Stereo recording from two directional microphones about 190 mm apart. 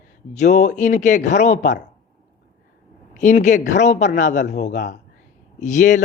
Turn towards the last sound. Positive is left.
turn(degrees=40)  # may be behind; listen again after turning